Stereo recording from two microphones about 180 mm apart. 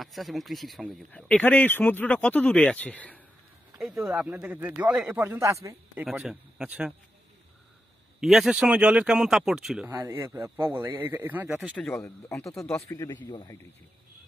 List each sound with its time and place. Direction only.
0.0 s speech: centre (ahead or behind)
3.8 s speech: 5° right (ahead or behind)
6.0 s speech: 5° right (ahead or behind)
8.2 s speech: centre (ahead or behind)
9.8 s speech: 15° right (ahead or behind)
11.7 s speech: 10° left (ahead or behind)